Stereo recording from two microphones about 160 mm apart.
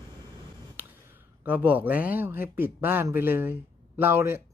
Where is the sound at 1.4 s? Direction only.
10° right (ahead or behind).